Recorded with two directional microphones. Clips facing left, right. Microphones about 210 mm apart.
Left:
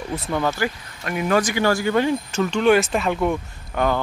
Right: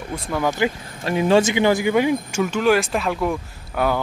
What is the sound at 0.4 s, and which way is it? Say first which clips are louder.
Speech: right 4 dB; 15° right (ahead or behind).